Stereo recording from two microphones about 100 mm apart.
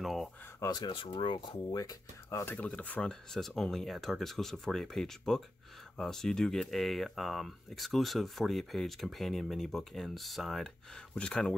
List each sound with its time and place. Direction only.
0.0 s a sound: centre (ahead or behind)
0.6 s speech: 40° left (ahead or behind)
0.9 s speech: 60° left (ahead or behind); by 2.4 s 40° left (ahead or behind)
2.4 s speech: 15° left (ahead or behind)